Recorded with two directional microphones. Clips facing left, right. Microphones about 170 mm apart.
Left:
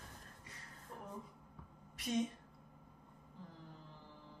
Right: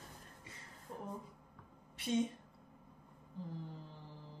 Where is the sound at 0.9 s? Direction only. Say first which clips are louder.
Right 4 dB; 30° right (ahead or behind).